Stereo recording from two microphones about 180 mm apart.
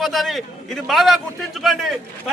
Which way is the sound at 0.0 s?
Centre (ahead or behind).